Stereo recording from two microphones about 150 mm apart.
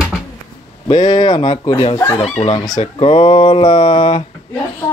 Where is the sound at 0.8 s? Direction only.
35° left (ahead or behind).